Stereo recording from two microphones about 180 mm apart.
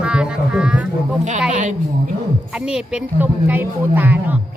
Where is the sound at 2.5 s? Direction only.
5° right (ahead or behind).